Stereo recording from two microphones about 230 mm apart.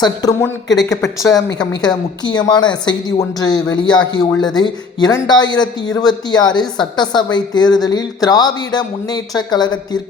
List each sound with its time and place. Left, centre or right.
0.0 s speech: centre